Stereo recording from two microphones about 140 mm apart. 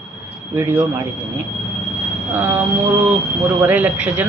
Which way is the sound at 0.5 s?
15° right (ahead or behind).